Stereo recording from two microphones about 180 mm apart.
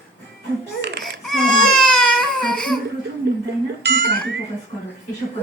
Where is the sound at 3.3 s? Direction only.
70° right (ahead or behind).